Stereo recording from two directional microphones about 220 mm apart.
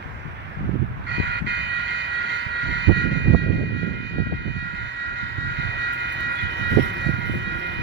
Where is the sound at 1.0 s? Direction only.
50° right (ahead or behind).